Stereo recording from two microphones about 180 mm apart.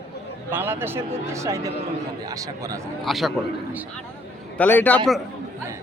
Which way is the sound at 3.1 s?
Centre (ahead or behind).